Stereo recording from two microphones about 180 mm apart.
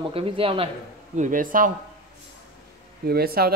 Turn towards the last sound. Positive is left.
turn(degrees=-60)  # may be behind; listen again after turning